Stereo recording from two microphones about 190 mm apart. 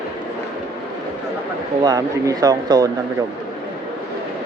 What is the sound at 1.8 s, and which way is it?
Speech, 20° right (ahead or behind).